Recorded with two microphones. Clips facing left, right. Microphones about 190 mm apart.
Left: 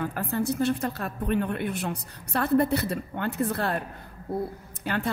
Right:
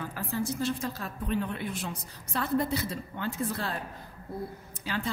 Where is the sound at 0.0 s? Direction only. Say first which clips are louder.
Left 5 dB; 60° left (ahead or behind).